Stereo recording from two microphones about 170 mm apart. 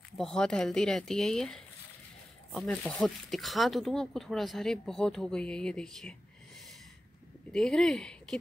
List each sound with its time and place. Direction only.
0.2 s speech: 5° left (ahead or behind)
7.5 s speech: 5° left (ahead or behind)